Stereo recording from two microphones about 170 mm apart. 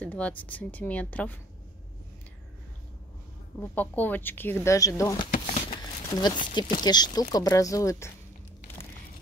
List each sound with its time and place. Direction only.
0.0 s speech: 10° left (ahead or behind)
3.7 s speech: 10° left (ahead or behind)
5.5 s a sound: 30° left (ahead or behind)
6.5 s speech: 25° left (ahead or behind)